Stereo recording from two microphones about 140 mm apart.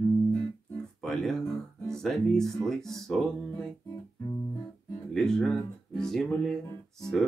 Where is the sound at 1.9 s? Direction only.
5° left (ahead or behind).